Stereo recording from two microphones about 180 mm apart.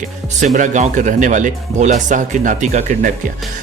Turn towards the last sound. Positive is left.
turn(degrees=-40)  # may be behind; listen again after turning